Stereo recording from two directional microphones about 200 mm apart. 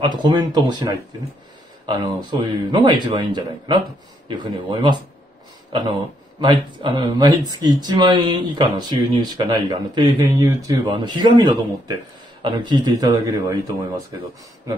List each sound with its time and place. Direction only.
0.0 s speech: 20° right (ahead or behind)
2.7 s speech: 20° right (ahead or behind)